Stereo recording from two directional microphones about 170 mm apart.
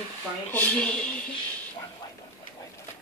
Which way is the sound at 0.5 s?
10° left (ahead or behind).